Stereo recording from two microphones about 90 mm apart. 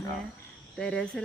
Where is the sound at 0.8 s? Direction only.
10° left (ahead or behind).